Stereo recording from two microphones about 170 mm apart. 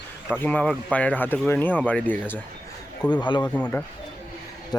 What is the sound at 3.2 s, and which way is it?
Speech, 25° left (ahead or behind).